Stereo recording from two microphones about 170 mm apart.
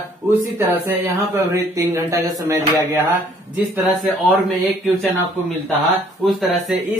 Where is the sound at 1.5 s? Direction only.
15° right (ahead or behind).